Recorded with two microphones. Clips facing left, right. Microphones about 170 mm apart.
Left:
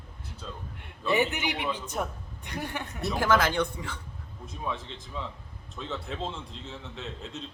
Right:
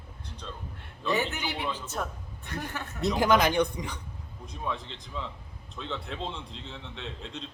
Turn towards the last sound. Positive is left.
turn(degrees=5)  # may be behind; listen again after turning